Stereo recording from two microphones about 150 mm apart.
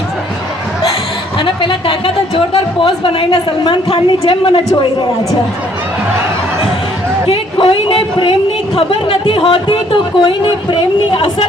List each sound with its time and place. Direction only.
1.4 s speech: 35° left (ahead or behind)
7.3 s a woman's voice: 40° left (ahead or behind)